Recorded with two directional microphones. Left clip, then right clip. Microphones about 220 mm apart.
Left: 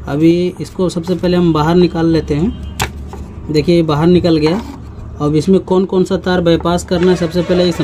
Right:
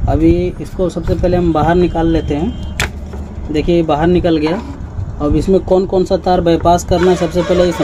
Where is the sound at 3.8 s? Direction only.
45° left (ahead or behind); by 6.0 s 30° left (ahead or behind).